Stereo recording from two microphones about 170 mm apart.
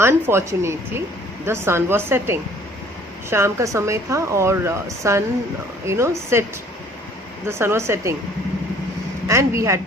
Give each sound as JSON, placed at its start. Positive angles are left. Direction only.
{"t": 0.0, "sound": "speech", "side_deg": -15}
{"t": 7.4, "sound": "speech", "side_deg": -15}
{"t": 9.2, "sound": "speech", "side_deg": -15}